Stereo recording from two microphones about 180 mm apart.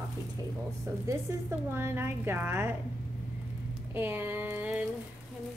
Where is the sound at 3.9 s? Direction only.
10° right (ahead or behind).